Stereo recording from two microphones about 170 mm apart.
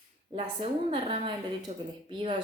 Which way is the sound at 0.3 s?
40° right (ahead or behind).